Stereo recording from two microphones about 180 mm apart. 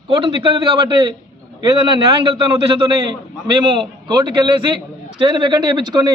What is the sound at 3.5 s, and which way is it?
A man's voice, 25° right (ahead or behind).